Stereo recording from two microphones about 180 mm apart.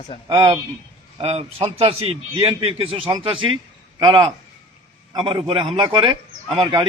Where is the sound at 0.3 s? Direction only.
20° right (ahead or behind).